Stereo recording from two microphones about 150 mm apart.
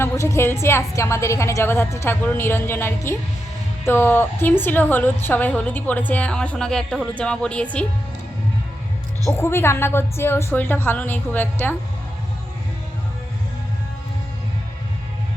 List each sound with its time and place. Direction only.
0.0 s a woman's voice: 15° left (ahead or behind)
9.2 s a woman's voice: 15° left (ahead or behind)